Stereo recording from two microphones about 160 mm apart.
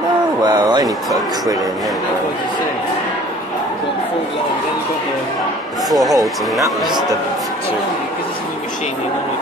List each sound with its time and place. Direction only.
0.4 s speech: 25° right (ahead or behind)
5.9 s speech: centre (ahead or behind)